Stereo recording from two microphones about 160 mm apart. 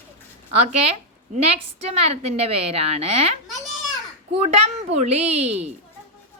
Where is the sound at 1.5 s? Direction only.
40° right (ahead or behind).